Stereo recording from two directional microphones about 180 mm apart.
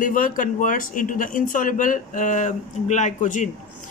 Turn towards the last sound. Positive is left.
turn(degrees=45)  # may be behind; listen again after turning